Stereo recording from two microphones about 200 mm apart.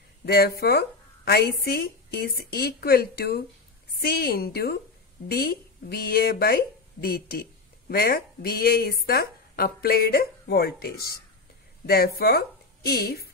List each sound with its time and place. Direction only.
0.2 s a woman's voice: 50° left (ahead or behind)